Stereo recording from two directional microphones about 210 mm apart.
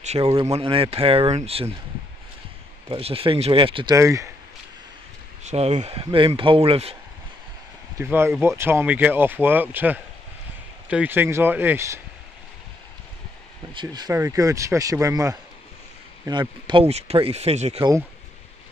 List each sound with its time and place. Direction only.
0.0 s speech: 30° right (ahead or behind)
2.9 s speech: 25° right (ahead or behind)
5.4 s speech: 35° right (ahead or behind)
8.0 s speech: 10° right (ahead or behind)
13.7 s speech: 20° right (ahead or behind)